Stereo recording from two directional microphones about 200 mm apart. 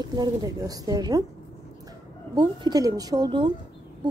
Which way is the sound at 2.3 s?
25° right (ahead or behind).